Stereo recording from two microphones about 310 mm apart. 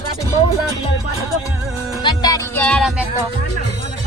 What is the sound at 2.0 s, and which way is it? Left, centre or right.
Music, centre.